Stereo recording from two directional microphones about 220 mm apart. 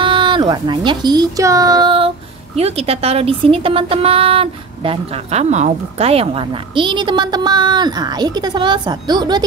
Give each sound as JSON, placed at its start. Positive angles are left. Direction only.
{"t": 0.0, "sound": "speech", "side_deg": -20}